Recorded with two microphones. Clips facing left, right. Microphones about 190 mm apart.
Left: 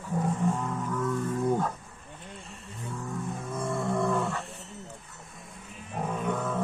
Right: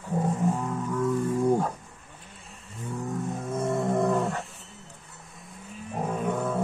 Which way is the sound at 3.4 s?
25° right (ahead or behind).